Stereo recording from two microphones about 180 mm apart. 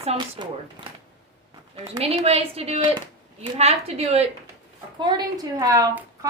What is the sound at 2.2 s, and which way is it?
A woman's voice, 35° right (ahead or behind).